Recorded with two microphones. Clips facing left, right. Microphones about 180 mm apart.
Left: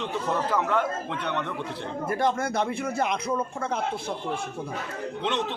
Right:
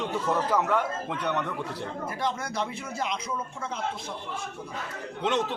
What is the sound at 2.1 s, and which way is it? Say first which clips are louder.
A man's voice: left 8 dB; 55° left (ahead or behind).